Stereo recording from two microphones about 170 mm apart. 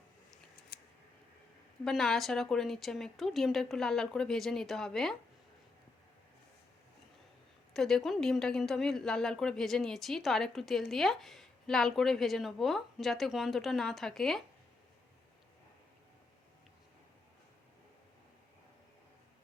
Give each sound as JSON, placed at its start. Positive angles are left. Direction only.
{"t": 0.7, "sound": "a sound", "side_deg": 70}
{"t": 1.8, "sound": "a woman's voice", "side_deg": 0}
{"t": 7.7, "sound": "a woman's voice", "side_deg": 5}